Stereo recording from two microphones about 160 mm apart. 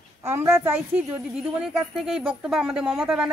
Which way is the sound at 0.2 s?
15° right (ahead or behind).